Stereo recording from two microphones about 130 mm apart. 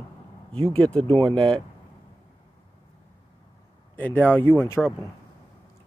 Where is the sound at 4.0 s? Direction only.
15° left (ahead or behind).